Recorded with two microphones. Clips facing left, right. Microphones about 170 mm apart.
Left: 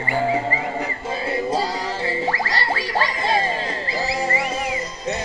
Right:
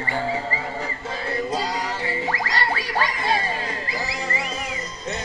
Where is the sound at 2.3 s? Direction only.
30° left (ahead or behind).